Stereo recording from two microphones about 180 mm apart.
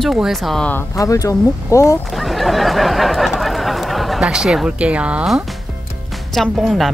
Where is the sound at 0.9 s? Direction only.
20° left (ahead or behind).